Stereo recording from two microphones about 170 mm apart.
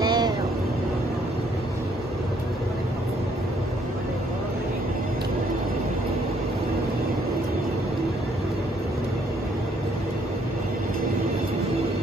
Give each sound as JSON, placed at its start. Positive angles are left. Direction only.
{"t": 0.0, "sound": "vehicle", "side_deg": -25}